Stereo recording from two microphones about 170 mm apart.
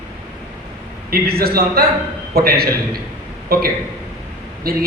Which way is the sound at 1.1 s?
65° right (ahead or behind).